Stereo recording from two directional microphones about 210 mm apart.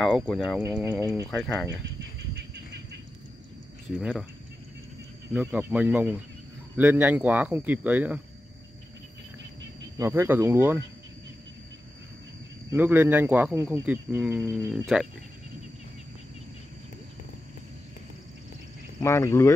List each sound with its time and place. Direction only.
0.0 s speech: centre (ahead or behind)
1.2 s speech: 10° left (ahead or behind)
2.0 s a sound: 55° right (ahead or behind)
4.0 s speech: 5° right (ahead or behind)
5.3 s speech: 5° right (ahead or behind)
9.9 s speech: 10° right (ahead or behind)
12.7 s speech: 10° right (ahead or behind)
18.9 s speech: 15° left (ahead or behind)